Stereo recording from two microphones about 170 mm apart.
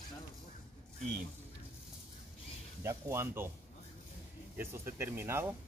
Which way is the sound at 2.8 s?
15° right (ahead or behind).